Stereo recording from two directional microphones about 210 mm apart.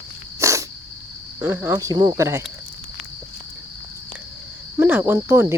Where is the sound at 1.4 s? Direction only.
10° right (ahead or behind).